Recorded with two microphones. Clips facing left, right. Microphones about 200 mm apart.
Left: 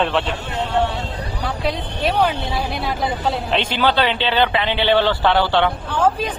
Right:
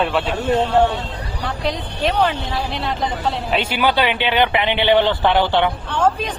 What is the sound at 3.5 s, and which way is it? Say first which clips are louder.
Speech: right 1 dB; 10° right (ahead or behind).